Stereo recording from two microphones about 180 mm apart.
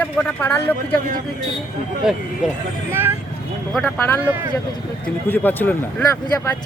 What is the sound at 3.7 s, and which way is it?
Speech, 5° left (ahead or behind).